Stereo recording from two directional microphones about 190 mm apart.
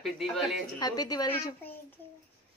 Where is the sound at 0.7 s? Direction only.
20° left (ahead or behind).